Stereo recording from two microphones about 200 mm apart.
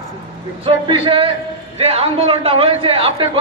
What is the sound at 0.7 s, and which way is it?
A man's voice, 25° right (ahead or behind).